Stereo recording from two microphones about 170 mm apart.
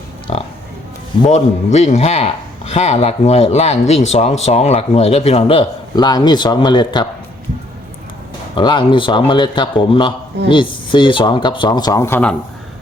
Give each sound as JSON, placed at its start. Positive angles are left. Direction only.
{"t": 0.3, "sound": "a man's voice", "side_deg": 35}
{"t": 8.5, "sound": "speech", "side_deg": 25}